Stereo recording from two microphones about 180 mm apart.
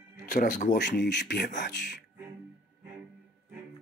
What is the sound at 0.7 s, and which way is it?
Speech, 70° left (ahead or behind).